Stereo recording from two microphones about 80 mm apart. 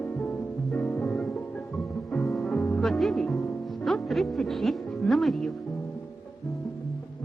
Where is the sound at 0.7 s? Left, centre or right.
Centre.